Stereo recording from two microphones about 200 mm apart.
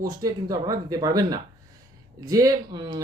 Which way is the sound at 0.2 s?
15° right (ahead or behind).